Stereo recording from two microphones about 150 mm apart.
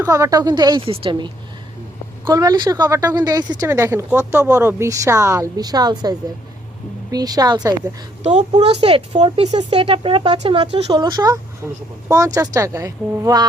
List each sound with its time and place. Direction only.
0.0 s speech: 20° right (ahead or behind); by 1.3 s 40° right (ahead or behind)
2.2 s speech: 25° right (ahead or behind)
8.2 s a woman's voice: 50° right (ahead or behind)
10.9 s speech: 30° right (ahead or behind)
11.6 s speech: 15° right (ahead or behind)